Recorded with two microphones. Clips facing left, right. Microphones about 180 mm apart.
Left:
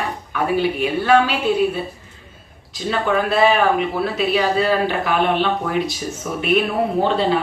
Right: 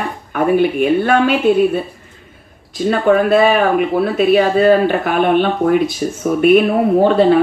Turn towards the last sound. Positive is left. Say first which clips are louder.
# right 8 dB
turn(degrees=-50)  # may be behind; listen again after turning